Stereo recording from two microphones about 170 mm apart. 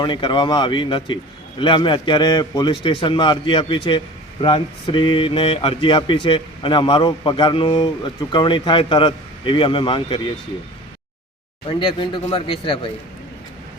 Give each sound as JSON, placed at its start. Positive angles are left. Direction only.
{"t": 0.0, "sound": "a man's voice", "side_deg": 30}
{"t": 11.8, "sound": "a man's voice", "side_deg": 30}